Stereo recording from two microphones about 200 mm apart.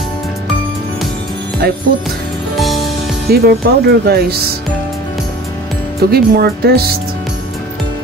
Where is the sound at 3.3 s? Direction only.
50° right (ahead or behind).